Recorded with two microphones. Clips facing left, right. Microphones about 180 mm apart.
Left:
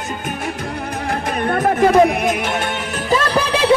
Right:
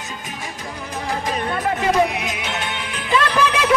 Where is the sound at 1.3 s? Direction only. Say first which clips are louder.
Left 7 dB; 55° left (ahead or behind); by 3.7 s 35° left (ahead or behind).